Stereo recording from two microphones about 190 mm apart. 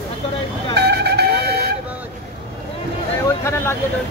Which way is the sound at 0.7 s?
60° right (ahead or behind).